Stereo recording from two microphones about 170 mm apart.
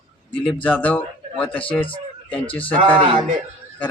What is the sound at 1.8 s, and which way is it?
Speech, 30° left (ahead or behind).